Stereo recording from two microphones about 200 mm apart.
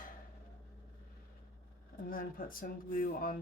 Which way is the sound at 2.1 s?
45° left (ahead or behind).